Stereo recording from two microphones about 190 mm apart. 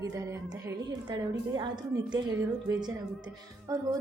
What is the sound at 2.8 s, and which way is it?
A woman's voice, 20° right (ahead or behind).